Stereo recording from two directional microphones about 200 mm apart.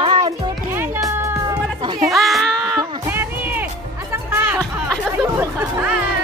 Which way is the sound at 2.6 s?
10° right (ahead or behind).